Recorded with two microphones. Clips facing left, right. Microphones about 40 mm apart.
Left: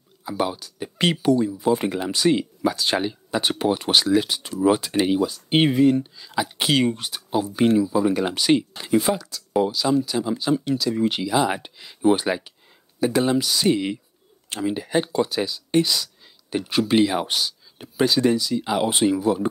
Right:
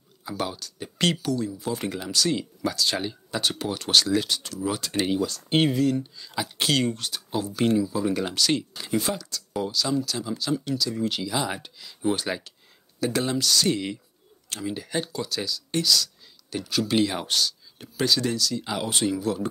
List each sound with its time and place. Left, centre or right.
0.2 s speech: centre
6.1 s speech: centre